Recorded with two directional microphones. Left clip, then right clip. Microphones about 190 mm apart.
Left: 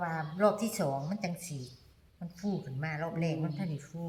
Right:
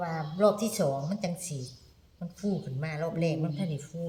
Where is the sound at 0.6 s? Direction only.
35° right (ahead or behind).